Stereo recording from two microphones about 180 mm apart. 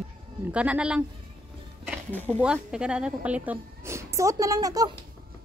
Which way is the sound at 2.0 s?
10° left (ahead or behind).